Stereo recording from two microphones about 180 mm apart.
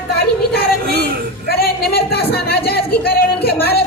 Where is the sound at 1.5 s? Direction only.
60° left (ahead or behind).